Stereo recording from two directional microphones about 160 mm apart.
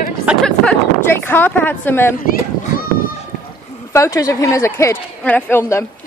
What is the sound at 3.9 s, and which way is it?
A woman's voice, 20° left (ahead or behind).